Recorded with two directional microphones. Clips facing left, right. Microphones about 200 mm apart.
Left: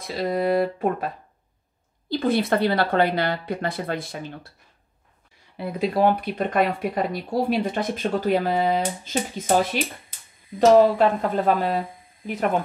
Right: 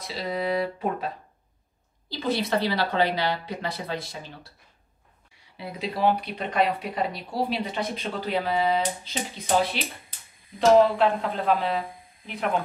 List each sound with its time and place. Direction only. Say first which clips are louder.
0.0 s speech: left 5 dB; 50° left (ahead or behind)
5.6 s speech: left 6 dB; 50° left (ahead or behind)